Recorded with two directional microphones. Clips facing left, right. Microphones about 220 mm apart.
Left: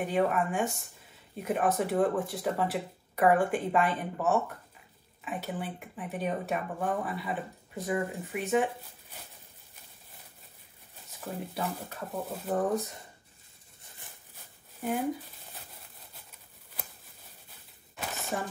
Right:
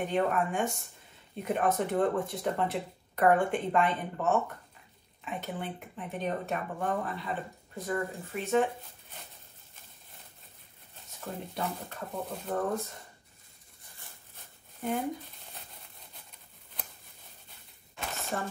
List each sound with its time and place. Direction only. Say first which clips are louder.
0.0 s speech: left 1 dB; 5° left (ahead or behind)
7.8 s speech: left 2 dB; 15° left (ahead or behind)
11.1 s speech: left 1 dB; 5° left (ahead or behind)
14.8 s speech: left 1 dB; 5° left (ahead or behind)
15.5 s a sound: even; 5° left (ahead or behind)
17.5 s a sound: left 1 dB; centre (ahead or behind)